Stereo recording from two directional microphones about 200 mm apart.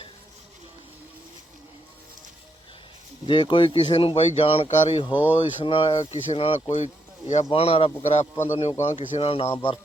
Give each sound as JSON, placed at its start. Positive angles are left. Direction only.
{"t": 3.2, "sound": "speech", "side_deg": 25}
{"t": 5.1, "sound": "speech", "side_deg": -10}
{"t": 5.4, "sound": "speech", "side_deg": 25}